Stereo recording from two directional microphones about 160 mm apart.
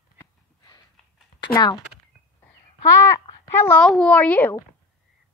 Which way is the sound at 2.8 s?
20° left (ahead or behind).